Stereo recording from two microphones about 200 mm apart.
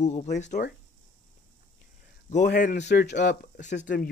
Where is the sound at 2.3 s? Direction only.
40° left (ahead or behind); by 3.6 s 60° left (ahead or behind).